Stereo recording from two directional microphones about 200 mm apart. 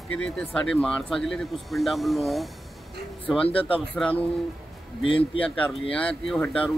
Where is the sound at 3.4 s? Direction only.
25° left (ahead or behind).